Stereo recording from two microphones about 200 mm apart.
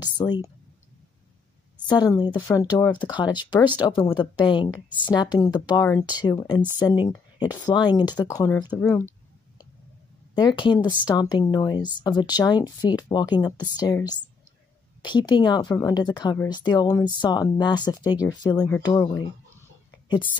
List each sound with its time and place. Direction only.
0.0 s speech: 20° left (ahead or behind)
1.9 s speech: 20° left (ahead or behind)
10.3 s speech: 25° left (ahead or behind)
15.0 s speech: 20° left (ahead or behind)